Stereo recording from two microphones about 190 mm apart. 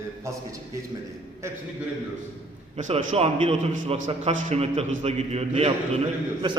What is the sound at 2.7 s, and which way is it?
A man's voice, 40° right (ahead or behind).